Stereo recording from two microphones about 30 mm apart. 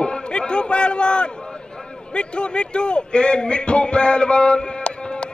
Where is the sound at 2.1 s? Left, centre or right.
Left.